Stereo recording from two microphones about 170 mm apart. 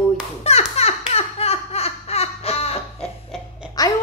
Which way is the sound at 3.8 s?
20° left (ahead or behind).